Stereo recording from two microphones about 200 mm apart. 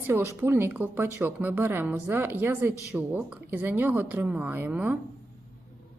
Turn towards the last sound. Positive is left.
turn(degrees=-5)  # may be behind; listen again after turning